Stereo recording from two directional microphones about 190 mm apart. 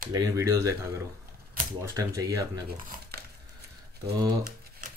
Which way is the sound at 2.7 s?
55° right (ahead or behind).